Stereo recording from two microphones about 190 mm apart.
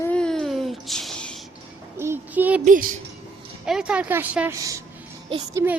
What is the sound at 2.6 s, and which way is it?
Speech, 45° right (ahead or behind).